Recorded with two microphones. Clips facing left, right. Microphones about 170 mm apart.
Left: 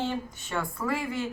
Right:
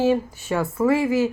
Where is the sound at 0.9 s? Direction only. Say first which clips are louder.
Right 11 dB; 85° right.